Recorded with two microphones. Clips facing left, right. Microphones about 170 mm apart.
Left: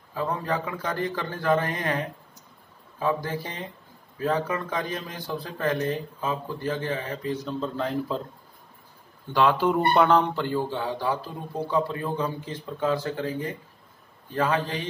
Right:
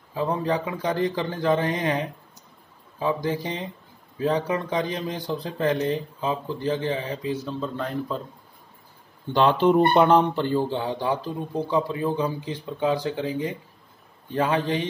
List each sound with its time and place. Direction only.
0.1 s speech: 20° right (ahead or behind)
7.4 s speech: centre (ahead or behind)
9.4 s speech: 25° right (ahead or behind)